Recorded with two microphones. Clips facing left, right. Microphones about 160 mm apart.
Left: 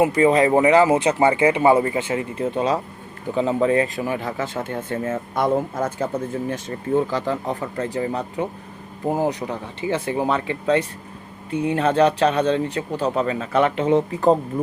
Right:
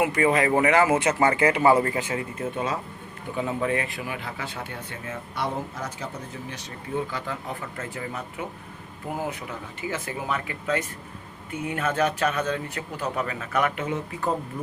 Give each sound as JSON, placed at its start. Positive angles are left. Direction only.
{"t": 0.2, "sound": "speech", "side_deg": 25}
{"t": 0.9, "sound": "speech", "side_deg": 15}